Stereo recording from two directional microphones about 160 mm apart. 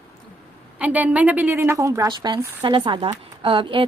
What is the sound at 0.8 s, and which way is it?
A woman's voice, 10° right (ahead or behind).